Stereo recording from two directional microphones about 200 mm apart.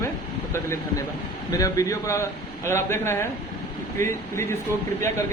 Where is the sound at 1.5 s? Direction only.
15° left (ahead or behind).